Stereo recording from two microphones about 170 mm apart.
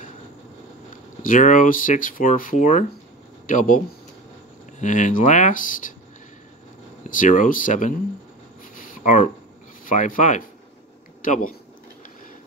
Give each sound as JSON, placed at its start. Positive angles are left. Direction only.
{"t": 1.2, "sound": "speech", "side_deg": 50}
{"t": 7.1, "sound": "speech", "side_deg": 50}
{"t": 8.7, "sound": "a sound", "side_deg": 50}
{"t": 9.8, "sound": "speech", "side_deg": 50}